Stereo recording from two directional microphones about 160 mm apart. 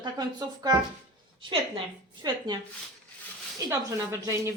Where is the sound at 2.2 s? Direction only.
25° right (ahead or behind).